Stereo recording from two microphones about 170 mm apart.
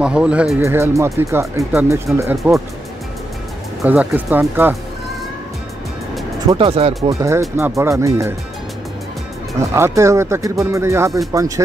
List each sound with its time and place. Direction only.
0.0 s speech: 5° right (ahead or behind)
3.8 s speech: 10° right (ahead or behind)
6.4 s speech: 30° right (ahead or behind)
7.1 s speech: 20° right (ahead or behind)
9.6 s speech: 15° right (ahead or behind)